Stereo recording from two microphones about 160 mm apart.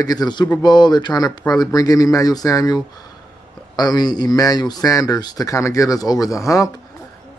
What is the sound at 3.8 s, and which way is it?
A man's voice, 25° left (ahead or behind).